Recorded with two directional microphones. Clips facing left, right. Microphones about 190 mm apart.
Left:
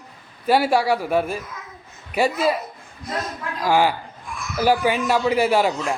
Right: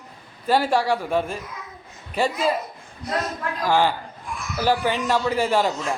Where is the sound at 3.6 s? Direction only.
10° left (ahead or behind).